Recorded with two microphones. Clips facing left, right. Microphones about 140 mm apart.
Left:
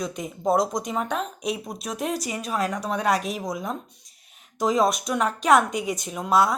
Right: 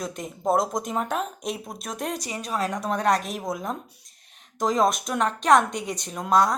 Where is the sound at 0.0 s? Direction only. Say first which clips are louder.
Left 1 dB; centre (ahead or behind).